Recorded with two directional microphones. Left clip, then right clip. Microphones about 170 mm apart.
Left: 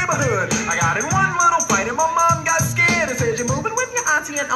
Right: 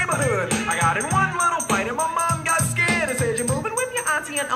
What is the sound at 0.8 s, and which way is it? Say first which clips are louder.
Music: left 1 dB; 45° right (ahead or behind).